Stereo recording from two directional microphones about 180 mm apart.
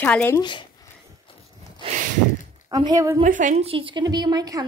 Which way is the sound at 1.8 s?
45° right (ahead or behind).